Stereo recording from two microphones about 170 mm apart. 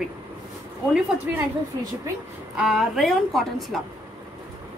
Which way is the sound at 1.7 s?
25° right (ahead or behind).